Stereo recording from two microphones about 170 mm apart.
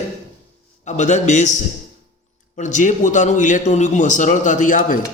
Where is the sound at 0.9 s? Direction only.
45° left (ahead or behind).